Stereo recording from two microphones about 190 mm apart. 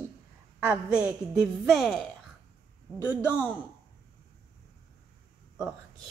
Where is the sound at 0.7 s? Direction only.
5° right (ahead or behind).